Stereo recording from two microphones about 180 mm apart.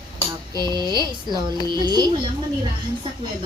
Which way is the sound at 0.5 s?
25° right (ahead or behind).